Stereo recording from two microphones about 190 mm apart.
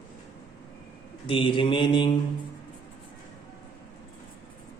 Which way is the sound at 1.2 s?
25° left (ahead or behind).